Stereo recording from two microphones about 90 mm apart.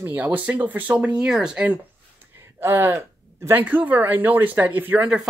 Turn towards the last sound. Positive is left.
turn(degrees=-20)  # may be behind; listen again after turning